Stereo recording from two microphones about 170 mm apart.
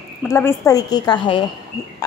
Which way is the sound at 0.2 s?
15° left (ahead or behind).